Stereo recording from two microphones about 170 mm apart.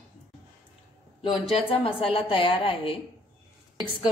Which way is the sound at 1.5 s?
35° left (ahead or behind).